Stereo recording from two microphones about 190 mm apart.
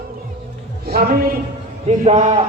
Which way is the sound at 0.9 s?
55° right (ahead or behind).